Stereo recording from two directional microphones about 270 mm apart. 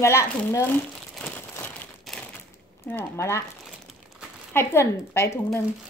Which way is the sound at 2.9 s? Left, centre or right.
Centre.